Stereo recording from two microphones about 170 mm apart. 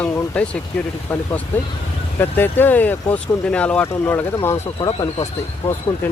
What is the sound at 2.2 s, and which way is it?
Speech, 10° left (ahead or behind).